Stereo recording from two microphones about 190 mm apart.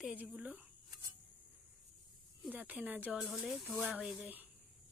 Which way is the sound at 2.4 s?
10° right (ahead or behind).